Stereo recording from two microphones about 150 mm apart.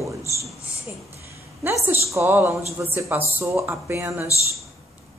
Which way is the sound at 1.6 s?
15° right (ahead or behind).